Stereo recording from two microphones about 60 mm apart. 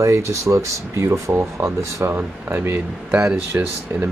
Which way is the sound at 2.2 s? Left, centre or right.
Right.